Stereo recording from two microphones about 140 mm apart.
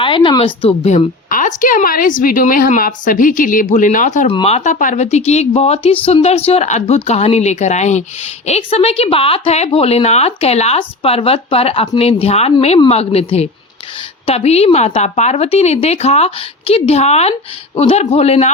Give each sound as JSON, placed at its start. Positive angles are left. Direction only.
{"t": 0.0, "sound": "speech", "side_deg": 35}
{"t": 1.3, "sound": "a woman's voice", "side_deg": 75}
{"t": 4.3, "sound": "speech", "side_deg": 45}